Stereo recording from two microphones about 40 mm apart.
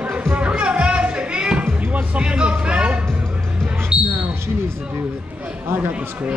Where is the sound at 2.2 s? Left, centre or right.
Right.